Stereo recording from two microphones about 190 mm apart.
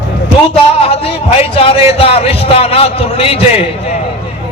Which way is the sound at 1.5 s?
30° left (ahead or behind).